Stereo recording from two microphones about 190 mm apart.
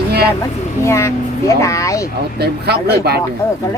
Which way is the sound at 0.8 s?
15° left (ahead or behind).